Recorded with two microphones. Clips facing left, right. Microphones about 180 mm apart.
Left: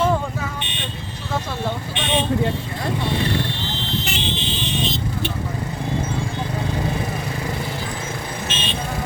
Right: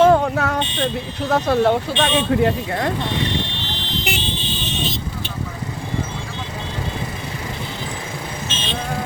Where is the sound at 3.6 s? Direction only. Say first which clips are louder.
Left 1 dB; 20° right (ahead or behind).